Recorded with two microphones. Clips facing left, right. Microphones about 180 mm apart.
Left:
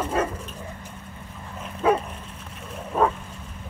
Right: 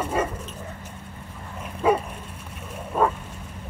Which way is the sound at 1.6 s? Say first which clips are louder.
Even; 5° right (ahead or behind).